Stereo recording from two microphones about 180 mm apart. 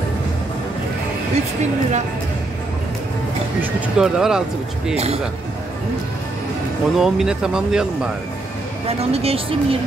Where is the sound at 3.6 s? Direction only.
5° right (ahead or behind).